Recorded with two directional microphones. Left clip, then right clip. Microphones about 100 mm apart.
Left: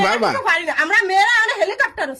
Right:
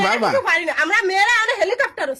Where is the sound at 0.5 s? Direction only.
35° right (ahead or behind).